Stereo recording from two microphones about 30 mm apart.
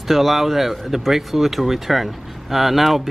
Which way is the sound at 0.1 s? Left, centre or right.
Centre.